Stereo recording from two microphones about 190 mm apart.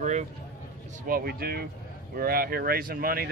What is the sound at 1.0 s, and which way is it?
Speech, 50° right (ahead or behind).